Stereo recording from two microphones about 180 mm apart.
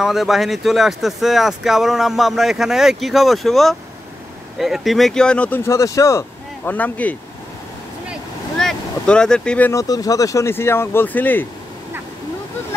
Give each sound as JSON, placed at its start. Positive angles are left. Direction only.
{"t": 0.0, "sound": "speech", "side_deg": 0}
{"t": 8.1, "sound": "boat", "side_deg": 5}
{"t": 9.7, "sound": "speech", "side_deg": 20}